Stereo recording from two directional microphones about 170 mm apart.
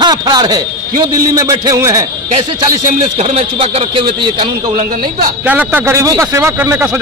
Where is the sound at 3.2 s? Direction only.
40° right (ahead or behind).